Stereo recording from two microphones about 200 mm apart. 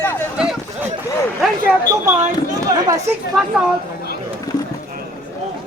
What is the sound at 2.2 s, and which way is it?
Speech, 15° right (ahead or behind).